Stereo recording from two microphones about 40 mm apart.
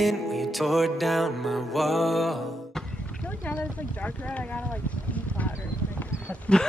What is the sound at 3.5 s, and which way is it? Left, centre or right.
Speech, left.